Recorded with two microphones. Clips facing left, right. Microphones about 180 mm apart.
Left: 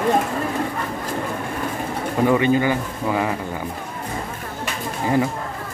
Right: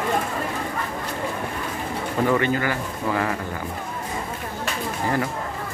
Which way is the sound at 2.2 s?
15° left (ahead or behind).